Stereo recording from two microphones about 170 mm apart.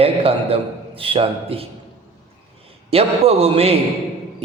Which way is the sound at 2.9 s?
35° right (ahead or behind).